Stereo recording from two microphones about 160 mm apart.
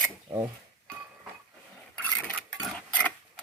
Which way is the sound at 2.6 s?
5° left (ahead or behind).